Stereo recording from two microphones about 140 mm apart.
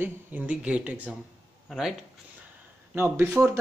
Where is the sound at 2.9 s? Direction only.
15° right (ahead or behind).